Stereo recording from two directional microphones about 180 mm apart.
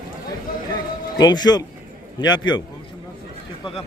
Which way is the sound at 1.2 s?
20° left (ahead or behind).